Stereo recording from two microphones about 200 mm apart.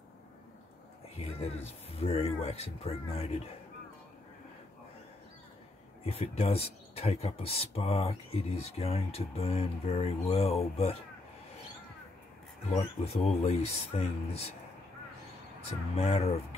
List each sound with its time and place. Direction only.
1.1 s speech: 30° left (ahead or behind)
6.0 s speech: 30° left (ahead or behind)
12.6 s speech: 30° left (ahead or behind)
16.0 s speech: 30° left (ahead or behind)